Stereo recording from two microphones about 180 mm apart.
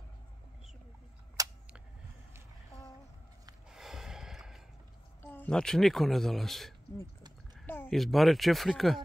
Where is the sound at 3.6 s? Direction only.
Centre (ahead or behind).